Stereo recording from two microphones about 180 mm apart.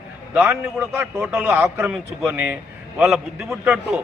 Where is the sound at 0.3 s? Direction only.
10° right (ahead or behind).